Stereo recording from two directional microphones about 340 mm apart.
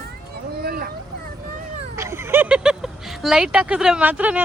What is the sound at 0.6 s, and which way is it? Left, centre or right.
Speech, right.